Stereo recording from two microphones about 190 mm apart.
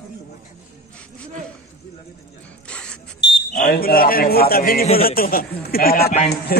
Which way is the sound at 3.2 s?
60° left (ahead or behind).